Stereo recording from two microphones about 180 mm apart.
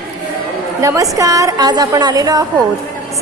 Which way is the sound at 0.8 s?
15° right (ahead or behind).